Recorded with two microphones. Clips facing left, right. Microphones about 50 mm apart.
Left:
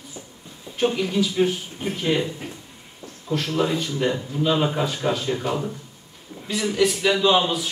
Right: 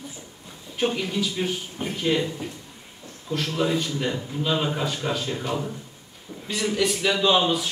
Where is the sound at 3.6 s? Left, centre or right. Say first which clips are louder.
Left 1 dB; centre.